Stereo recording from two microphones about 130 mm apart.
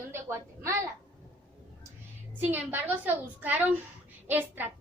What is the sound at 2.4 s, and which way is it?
A woman's voice, 15° right (ahead or behind).